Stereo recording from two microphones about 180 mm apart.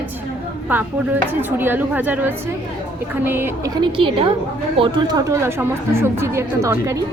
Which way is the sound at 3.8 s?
30° right (ahead or behind).